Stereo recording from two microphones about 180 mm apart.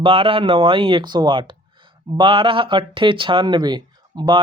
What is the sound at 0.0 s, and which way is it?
Speech, 30° right (ahead or behind).